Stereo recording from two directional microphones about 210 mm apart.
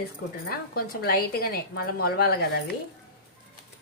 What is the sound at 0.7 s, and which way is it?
A woman's voice, 45° left (ahead or behind).